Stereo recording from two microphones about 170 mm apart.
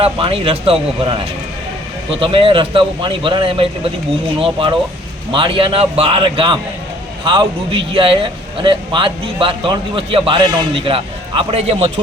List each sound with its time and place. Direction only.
0.0 s a man's voice: 30° right (ahead or behind)
2.0 s a man's voice: 30° right (ahead or behind)